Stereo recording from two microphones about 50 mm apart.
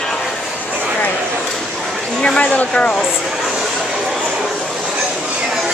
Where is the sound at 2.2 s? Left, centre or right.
Centre.